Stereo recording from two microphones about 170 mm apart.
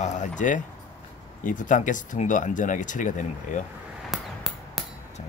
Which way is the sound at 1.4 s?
50° left (ahead or behind).